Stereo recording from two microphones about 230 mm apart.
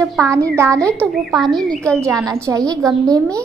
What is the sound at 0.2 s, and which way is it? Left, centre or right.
Speech, centre.